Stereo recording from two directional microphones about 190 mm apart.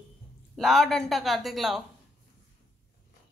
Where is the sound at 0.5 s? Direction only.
Centre (ahead or behind).